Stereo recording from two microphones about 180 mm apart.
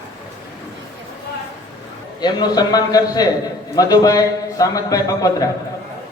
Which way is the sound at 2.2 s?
20° left (ahead or behind).